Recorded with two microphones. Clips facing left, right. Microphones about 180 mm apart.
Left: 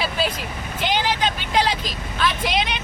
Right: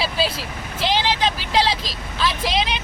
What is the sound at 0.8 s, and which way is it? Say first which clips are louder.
Speech: right 1 dB; 35° right (ahead or behind).